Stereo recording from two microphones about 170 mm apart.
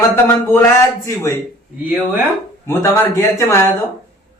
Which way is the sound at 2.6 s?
15° left (ahead or behind).